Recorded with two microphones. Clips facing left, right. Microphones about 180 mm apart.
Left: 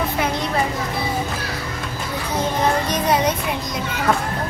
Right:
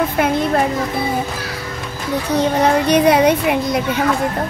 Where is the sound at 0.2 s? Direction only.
55° right (ahead or behind).